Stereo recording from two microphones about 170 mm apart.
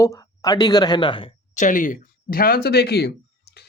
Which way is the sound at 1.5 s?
50° left (ahead or behind).